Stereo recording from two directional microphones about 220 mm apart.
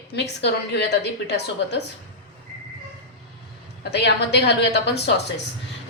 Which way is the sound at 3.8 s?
50° left (ahead or behind).